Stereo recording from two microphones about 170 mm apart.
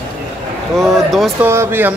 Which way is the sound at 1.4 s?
15° right (ahead or behind).